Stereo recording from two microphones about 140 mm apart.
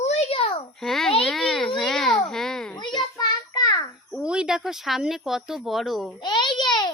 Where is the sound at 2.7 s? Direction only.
30° left (ahead or behind).